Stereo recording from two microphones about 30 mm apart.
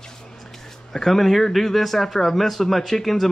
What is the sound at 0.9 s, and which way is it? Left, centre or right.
Speech, centre.